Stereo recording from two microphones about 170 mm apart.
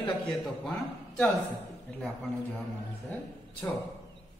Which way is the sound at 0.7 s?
5° left (ahead or behind).